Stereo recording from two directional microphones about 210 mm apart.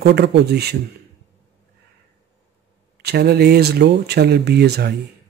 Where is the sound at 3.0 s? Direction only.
50° right (ahead or behind).